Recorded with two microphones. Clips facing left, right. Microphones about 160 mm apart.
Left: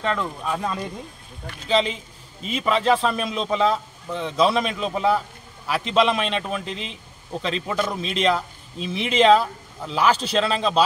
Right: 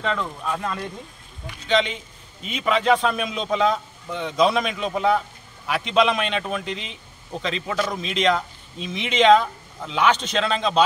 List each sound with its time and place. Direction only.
0.0 s speech: 5° left (ahead or behind)
1.7 s a man's voice: 35° left (ahead or behind)
2.5 s a man's voice: centre (ahead or behind)